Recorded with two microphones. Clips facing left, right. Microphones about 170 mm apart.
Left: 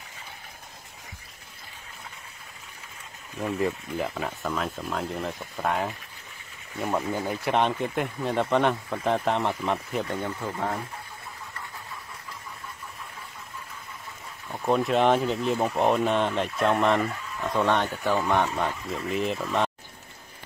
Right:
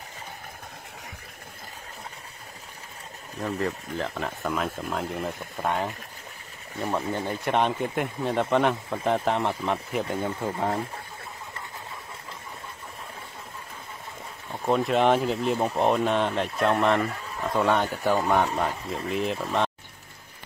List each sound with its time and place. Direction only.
3.3 s speech: 15° left (ahead or behind)
7.1 s speech: 5° left (ahead or behind)
10.4 s speech: 25° right (ahead or behind)
14.5 s speech: centre (ahead or behind)